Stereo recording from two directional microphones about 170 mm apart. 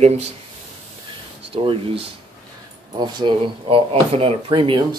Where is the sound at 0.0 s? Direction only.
40° right (ahead or behind).